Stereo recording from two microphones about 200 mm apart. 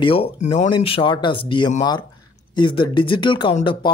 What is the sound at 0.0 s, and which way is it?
Speech, 30° left (ahead or behind).